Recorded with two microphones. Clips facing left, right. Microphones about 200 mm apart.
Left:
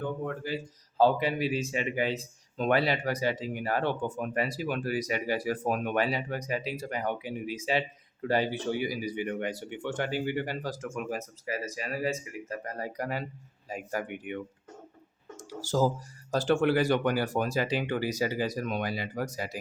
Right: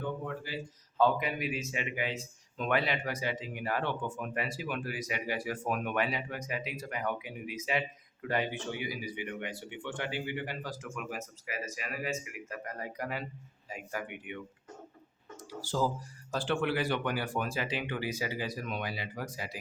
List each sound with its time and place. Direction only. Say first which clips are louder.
0.9 s speech: left 4 dB; 35° left (ahead or behind)
15.6 s speech: left 5 dB; 40° left (ahead or behind)